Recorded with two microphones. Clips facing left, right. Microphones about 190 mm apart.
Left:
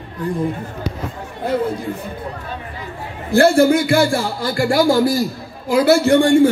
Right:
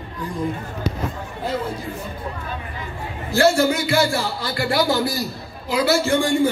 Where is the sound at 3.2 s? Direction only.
55° left (ahead or behind).